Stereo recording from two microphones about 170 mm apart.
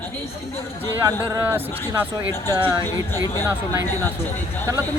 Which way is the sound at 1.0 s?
15° right (ahead or behind).